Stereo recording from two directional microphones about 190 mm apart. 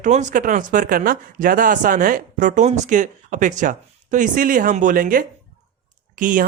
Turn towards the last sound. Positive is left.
turn(degrees=-45)  # may be behind; listen again after turning